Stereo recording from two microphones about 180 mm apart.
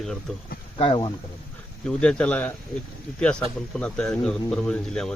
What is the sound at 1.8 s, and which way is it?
Speech, 5° left (ahead or behind).